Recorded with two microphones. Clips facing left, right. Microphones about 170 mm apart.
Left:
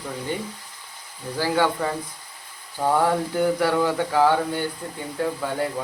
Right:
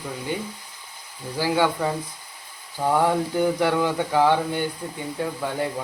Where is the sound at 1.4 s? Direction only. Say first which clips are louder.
Even; 15° right (ahead or behind).